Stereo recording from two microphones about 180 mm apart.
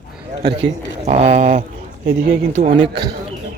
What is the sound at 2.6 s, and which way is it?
Speech, 65° right (ahead or behind).